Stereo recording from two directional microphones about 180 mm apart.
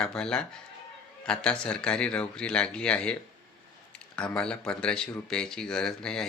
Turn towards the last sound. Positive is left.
turn(degrees=5)  # may be behind; listen again after turning